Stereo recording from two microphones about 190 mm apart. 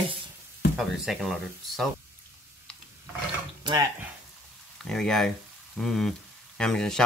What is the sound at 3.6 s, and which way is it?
Speech, 20° right (ahead or behind).